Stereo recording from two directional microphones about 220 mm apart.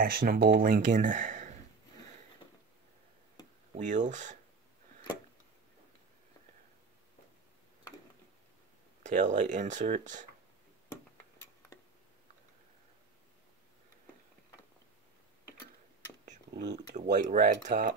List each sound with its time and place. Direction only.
0.0 s speech: 40° right (ahead or behind)
3.7 s speech: 35° right (ahead or behind)
9.0 s speech: 35° right (ahead or behind)
16.7 s speech: 35° right (ahead or behind)